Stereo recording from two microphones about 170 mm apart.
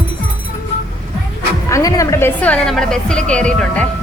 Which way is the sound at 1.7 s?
20° left (ahead or behind).